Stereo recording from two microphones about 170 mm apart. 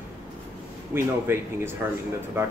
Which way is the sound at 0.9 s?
15° right (ahead or behind).